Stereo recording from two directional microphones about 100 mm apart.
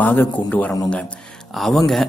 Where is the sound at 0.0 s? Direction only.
15° left (ahead or behind).